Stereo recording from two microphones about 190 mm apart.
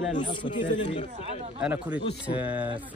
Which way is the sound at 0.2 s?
25° left (ahead or behind).